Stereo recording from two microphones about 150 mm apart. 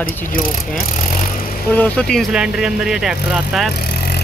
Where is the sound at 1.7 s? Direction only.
10° left (ahead or behind).